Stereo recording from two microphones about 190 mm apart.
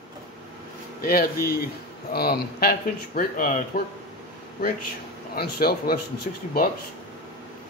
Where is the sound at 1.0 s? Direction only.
50° left (ahead or behind).